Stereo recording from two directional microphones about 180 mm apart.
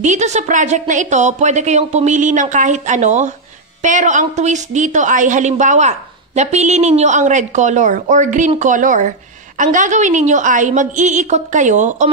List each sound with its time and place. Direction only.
0.0 s a woman's voice: 40° right (ahead or behind)